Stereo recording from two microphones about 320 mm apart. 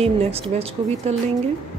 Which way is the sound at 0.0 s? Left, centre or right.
Centre.